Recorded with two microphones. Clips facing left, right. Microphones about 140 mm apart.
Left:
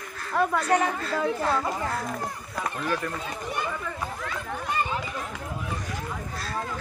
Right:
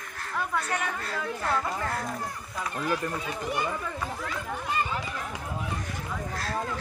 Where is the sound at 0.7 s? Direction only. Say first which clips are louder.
Left 8 dB; 40° left (ahead or behind).